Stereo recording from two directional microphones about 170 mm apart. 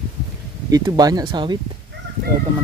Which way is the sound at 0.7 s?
20° right (ahead or behind).